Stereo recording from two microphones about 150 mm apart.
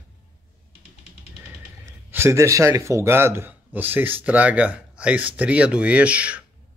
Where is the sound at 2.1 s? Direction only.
15° right (ahead or behind).